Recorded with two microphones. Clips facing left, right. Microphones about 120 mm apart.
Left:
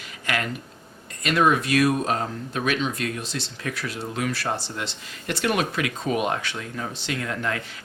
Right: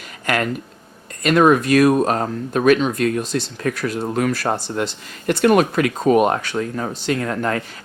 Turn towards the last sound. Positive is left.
turn(degrees=-45)  # may be behind; listen again after turning